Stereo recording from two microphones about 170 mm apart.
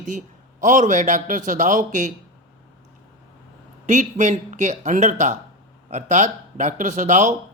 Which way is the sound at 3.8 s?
45° right (ahead or behind).